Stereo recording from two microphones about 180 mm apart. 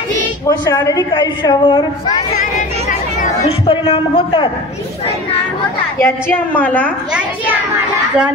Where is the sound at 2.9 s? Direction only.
45° left (ahead or behind).